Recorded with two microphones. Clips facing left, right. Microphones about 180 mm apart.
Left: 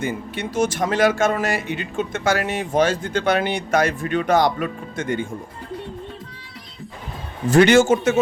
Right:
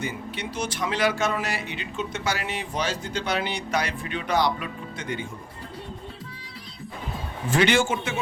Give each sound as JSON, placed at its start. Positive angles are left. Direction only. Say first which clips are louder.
{"t": 0.0, "sound": "speech", "louder": "left 6 dB", "side_deg": 50}
{"t": 7.5, "sound": "speech", "louder": "left 8 dB", "side_deg": 45}